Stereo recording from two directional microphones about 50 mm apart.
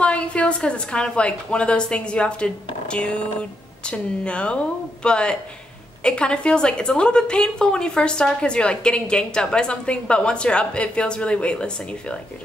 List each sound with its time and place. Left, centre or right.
0.0 s a woman's voice: left